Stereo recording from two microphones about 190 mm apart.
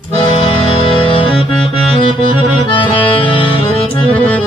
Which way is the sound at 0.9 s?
25° left (ahead or behind).